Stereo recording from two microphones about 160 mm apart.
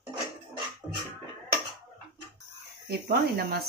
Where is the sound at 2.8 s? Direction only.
75° right (ahead or behind).